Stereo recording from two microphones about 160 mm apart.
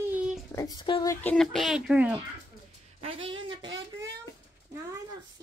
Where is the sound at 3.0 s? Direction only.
35° right (ahead or behind).